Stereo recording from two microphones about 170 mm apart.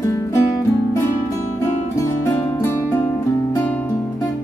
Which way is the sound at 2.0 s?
15° left (ahead or behind).